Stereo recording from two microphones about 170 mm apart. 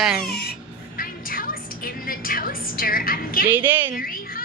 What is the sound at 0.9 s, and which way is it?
Music, 55° left (ahead or behind).